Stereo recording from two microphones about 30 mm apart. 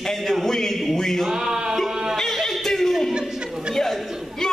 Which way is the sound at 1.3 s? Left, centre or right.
Centre.